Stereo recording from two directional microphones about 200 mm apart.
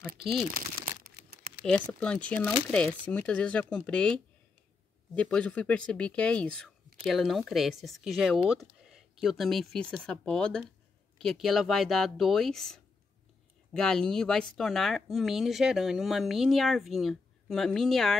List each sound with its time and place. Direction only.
0.2 s speech: centre (ahead or behind)
0.6 s crumpling: 50° right (ahead or behind)
1.7 s speech: 5° left (ahead or behind)